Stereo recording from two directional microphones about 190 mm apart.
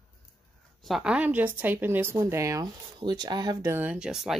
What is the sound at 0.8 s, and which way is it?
A woman's voice, centre (ahead or behind).